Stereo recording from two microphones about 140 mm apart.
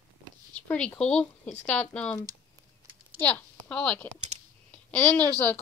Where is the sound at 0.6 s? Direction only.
10° left (ahead or behind).